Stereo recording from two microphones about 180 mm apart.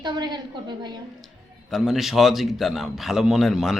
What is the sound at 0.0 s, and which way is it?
A woman's voice, 25° right (ahead or behind).